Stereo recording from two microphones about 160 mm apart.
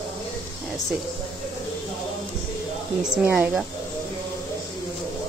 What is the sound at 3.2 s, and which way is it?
Speech, 10° right (ahead or behind).